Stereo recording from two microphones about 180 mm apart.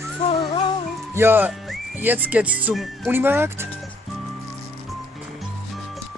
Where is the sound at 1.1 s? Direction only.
10° right (ahead or behind).